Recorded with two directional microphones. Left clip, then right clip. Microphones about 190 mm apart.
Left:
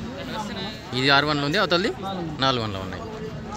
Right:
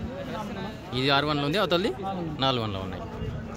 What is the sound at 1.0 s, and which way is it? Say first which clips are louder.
A man's voice: left 5 dB; centre (ahead or behind).